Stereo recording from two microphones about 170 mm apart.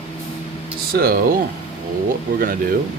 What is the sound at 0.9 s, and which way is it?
Speech, 65° right (ahead or behind).